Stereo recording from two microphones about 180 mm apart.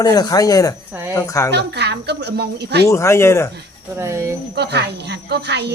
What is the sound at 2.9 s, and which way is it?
Speech, 15° left (ahead or behind).